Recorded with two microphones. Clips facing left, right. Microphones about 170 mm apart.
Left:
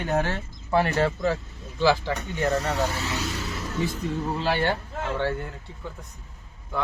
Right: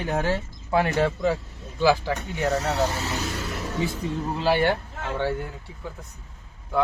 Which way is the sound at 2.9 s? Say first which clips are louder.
Right 1 dB; 50° right (ahead or behind).